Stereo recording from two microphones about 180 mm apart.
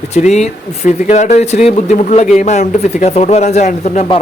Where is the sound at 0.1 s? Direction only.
40° left (ahead or behind).